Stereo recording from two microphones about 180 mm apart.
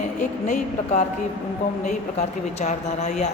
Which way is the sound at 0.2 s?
45° left (ahead or behind).